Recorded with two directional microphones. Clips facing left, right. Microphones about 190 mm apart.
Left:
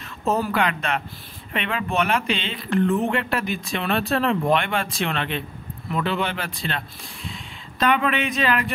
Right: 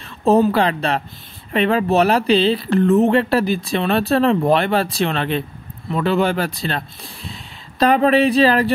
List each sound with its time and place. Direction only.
0.2 s speech: 30° right (ahead or behind)
7.8 s speech: 35° right (ahead or behind)